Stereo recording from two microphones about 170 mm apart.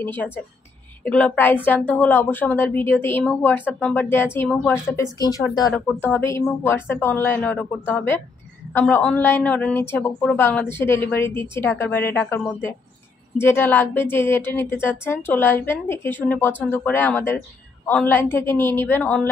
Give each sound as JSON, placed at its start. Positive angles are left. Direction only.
{"t": 0.0, "sound": "a woman's voice", "side_deg": 10}
{"t": 5.7, "sound": "a woman's voice", "side_deg": 10}